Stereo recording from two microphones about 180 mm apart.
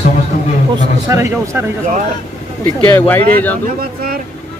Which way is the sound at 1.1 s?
15° right (ahead or behind).